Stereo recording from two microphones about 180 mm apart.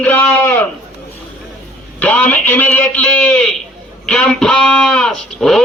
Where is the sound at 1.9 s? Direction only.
10° left (ahead or behind).